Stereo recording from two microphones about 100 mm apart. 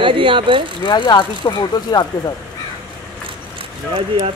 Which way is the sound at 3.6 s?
60° right (ahead or behind).